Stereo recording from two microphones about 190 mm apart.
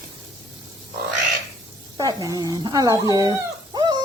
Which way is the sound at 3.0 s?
20° right (ahead or behind).